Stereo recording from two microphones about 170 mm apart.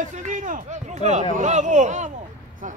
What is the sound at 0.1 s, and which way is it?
Speech, 45° right (ahead or behind).